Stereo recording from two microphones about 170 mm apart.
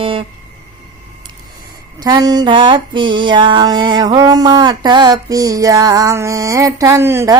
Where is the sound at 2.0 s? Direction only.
20° right (ahead or behind).